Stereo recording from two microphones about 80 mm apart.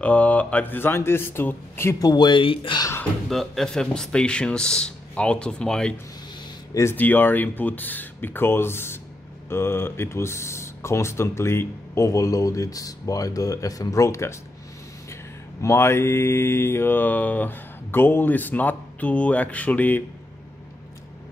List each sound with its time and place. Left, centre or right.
0.0 s mantra: centre
2.0 s speech: left
3.3 s speech: centre
6.7 s speech: left
7.0 s mantra: left
9.5 s speech: left
15.6 s mantra: left; by 20.0 s centre